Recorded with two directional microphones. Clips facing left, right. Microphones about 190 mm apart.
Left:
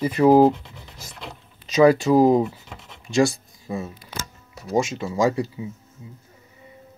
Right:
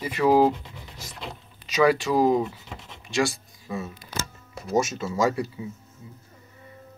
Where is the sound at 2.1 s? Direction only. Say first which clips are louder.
Left 5 dB; 25° left (ahead or behind).